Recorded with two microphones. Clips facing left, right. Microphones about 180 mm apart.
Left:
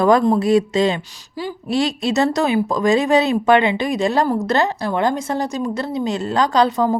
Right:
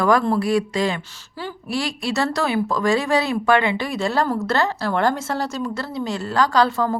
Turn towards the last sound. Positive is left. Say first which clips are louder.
# left 3 dB
turn(degrees=20)  # may be behind; listen again after turning